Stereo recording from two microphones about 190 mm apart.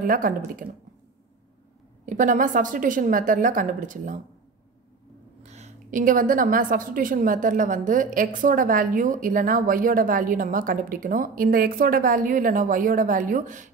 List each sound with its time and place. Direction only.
0.0 s a woman's voice: 50° right (ahead or behind)
2.0 s a woman's voice: 45° right (ahead or behind)
5.4 s a woman's voice: 35° right (ahead or behind)